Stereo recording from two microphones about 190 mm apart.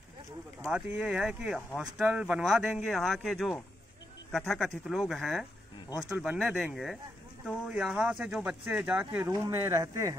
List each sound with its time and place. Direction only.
0.7 s speech: 5° right (ahead or behind)